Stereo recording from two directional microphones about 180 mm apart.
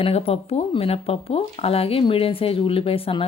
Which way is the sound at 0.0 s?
35° left (ahead or behind).